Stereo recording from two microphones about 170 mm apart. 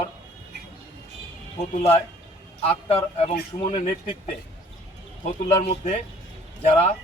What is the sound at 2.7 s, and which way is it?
Speech, 35° left (ahead or behind).